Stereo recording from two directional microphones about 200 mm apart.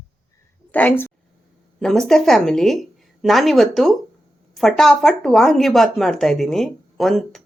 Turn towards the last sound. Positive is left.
turn(degrees=0)  # may be behind; listen again after turning